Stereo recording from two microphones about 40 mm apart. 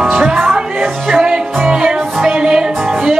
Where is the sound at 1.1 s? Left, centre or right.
Centre.